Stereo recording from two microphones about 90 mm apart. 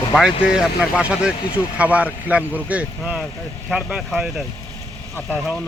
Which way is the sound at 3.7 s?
Centre (ahead or behind).